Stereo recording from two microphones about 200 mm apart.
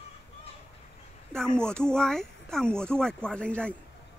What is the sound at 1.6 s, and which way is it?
Speech, 5° left (ahead or behind).